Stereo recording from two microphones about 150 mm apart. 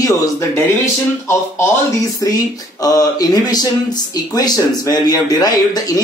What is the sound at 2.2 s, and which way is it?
Speech, 25° left (ahead or behind).